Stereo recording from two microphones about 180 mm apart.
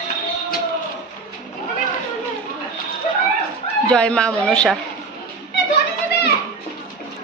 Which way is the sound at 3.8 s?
5° left (ahead or behind).